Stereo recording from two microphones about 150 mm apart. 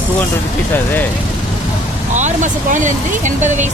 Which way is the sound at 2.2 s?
55° right (ahead or behind).